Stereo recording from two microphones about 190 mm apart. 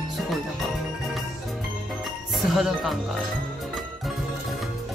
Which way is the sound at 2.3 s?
Centre (ahead or behind).